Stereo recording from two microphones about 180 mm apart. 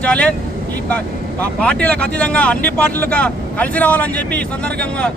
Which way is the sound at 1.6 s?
5° left (ahead or behind).